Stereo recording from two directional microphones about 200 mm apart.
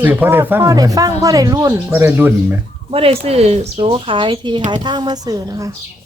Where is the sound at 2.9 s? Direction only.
30° right (ahead or behind).